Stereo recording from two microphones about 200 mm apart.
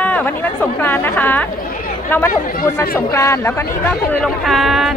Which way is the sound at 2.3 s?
45° left (ahead or behind).